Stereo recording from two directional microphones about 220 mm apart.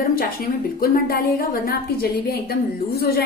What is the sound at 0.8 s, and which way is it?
A woman's voice, 40° left (ahead or behind).